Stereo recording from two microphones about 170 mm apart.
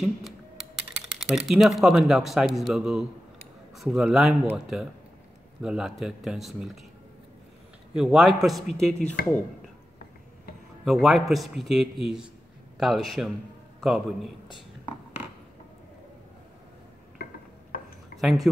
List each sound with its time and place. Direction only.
0.0 s a man's voice: centre (ahead or behind)
7.9 s a man's voice: 5° right (ahead or behind)
10.9 s a man's voice: centre (ahead or behind)
17.2 s a sound: 55° left (ahead or behind)
18.1 s speech: centre (ahead or behind)